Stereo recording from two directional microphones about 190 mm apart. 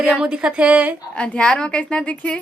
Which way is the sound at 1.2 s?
5° left (ahead or behind).